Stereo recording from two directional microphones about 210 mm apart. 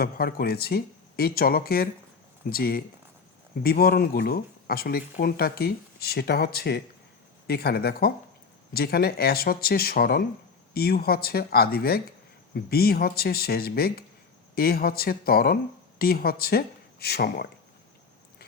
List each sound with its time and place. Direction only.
0.0 s speech: 45° left (ahead or behind)